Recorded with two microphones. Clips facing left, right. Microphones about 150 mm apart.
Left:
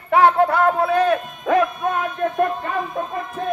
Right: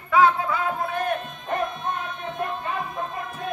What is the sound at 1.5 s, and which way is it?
Music, 85° left.